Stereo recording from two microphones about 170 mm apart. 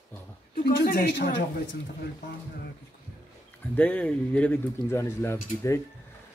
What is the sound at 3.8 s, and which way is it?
Speech, 10° left (ahead or behind).